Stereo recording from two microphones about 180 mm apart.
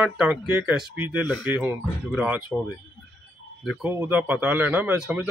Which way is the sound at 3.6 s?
5° right (ahead or behind).